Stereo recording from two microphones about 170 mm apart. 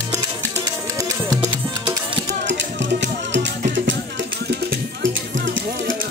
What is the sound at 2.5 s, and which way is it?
Music, 90° right.